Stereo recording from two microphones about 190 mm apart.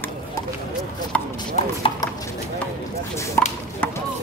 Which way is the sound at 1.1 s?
5° left (ahead or behind).